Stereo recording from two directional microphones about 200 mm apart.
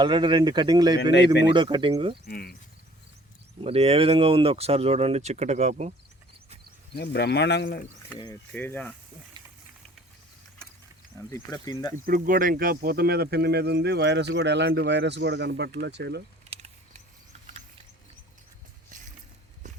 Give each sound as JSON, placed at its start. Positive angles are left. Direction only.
{"t": 0.0, "sound": "speech", "side_deg": -25}
{"t": 1.1, "sound": "speech", "side_deg": 60}
{"t": 1.5, "sound": "speech", "side_deg": -25}
{"t": 2.2, "sound": "speech", "side_deg": 50}
{"t": 3.6, "sound": "speech", "side_deg": -30}
{"t": 6.9, "sound": "speech", "side_deg": 55}
{"t": 8.5, "sound": "speech", "side_deg": 10}
{"t": 11.3, "sound": "speech", "side_deg": 15}
{"t": 12.0, "sound": "speech", "side_deg": -45}
{"t": 16.5, "sound": "a sound", "side_deg": -35}